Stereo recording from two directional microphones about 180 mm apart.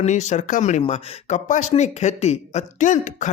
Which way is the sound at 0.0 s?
40° left (ahead or behind).